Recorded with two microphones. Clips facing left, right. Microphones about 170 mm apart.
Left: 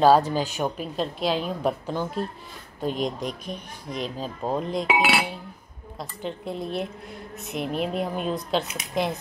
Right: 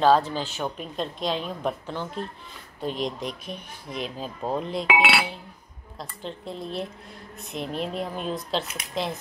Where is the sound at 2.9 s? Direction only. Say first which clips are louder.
Left 1 dB; 45° left (ahead or behind).